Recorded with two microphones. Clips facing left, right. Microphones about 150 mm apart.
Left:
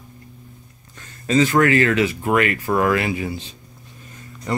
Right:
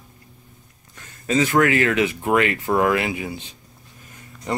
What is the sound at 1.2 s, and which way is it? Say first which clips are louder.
Speech: left 2 dB; 10° right (ahead or behind).